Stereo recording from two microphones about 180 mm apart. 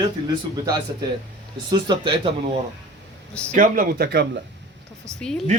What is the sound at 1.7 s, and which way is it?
Speech, 25° right (ahead or behind).